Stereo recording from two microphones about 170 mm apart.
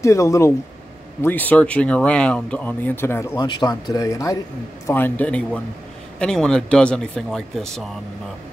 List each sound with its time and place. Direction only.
0.0 s speech: 15° left (ahead or behind)
3.3 s speech: 25° left (ahead or behind); by 7.8 s centre (ahead or behind)